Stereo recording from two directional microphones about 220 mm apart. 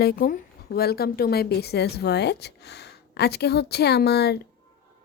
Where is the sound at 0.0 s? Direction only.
45° left (ahead or behind).